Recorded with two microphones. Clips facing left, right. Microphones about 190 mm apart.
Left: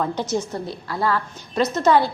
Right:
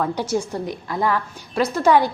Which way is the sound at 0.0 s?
10° right (ahead or behind).